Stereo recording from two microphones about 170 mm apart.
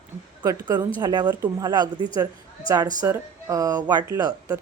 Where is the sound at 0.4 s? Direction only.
20° right (ahead or behind).